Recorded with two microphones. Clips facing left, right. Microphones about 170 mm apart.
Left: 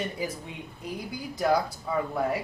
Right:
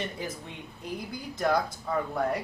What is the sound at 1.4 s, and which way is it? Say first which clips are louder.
A man's voice: left 2 dB; 5° left (ahead or behind).